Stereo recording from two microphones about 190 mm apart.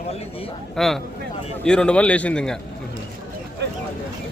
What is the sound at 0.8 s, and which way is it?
A man's voice, centre (ahead or behind).